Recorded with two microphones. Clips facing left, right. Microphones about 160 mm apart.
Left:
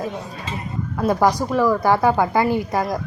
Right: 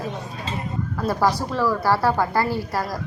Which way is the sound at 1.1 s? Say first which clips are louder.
Left 4 dB; 15° left (ahead or behind).